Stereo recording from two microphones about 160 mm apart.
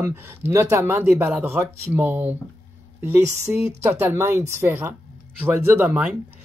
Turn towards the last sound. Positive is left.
turn(degrees=-10)  # may be behind; listen again after turning